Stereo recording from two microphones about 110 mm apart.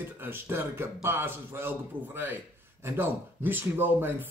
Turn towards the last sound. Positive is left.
turn(degrees=-20)  # may be behind; listen again after turning